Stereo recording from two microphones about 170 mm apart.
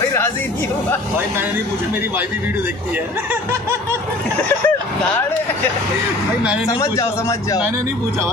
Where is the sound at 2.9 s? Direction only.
15° right (ahead or behind).